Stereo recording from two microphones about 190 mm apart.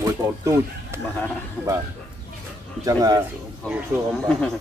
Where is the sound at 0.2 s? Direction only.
10° right (ahead or behind).